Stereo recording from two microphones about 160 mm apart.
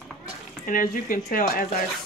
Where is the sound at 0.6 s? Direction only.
60° left (ahead or behind).